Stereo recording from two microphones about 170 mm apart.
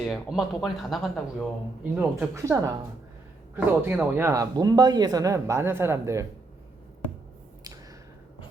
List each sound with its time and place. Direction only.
0.0 s speech: centre (ahead or behind)
2.0 s speech: 15° right (ahead or behind)